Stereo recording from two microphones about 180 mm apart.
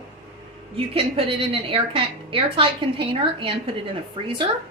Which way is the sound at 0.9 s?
30° right (ahead or behind).